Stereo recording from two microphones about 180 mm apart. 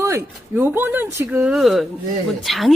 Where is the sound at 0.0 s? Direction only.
15° right (ahead or behind).